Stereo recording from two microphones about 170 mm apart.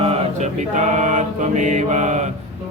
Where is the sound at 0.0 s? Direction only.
35° right (ahead or behind).